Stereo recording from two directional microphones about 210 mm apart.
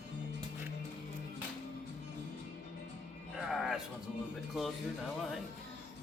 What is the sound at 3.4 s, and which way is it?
Music, centre (ahead or behind).